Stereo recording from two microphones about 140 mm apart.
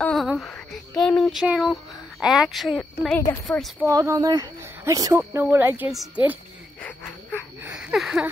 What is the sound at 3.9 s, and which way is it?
Speech, 25° right (ahead or behind).